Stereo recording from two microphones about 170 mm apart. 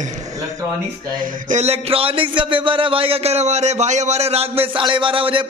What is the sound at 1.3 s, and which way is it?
Speech, 50° right (ahead or behind).